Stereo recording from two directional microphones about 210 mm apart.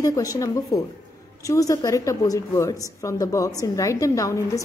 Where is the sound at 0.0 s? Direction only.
15° left (ahead or behind).